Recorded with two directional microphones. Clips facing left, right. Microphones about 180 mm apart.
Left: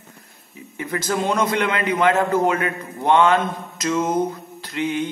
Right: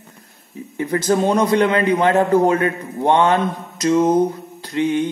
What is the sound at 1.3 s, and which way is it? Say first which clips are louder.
A man's voice: right 6 dB; 35° right (ahead or behind).